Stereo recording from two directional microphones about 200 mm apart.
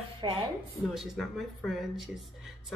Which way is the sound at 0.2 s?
25° right (ahead or behind).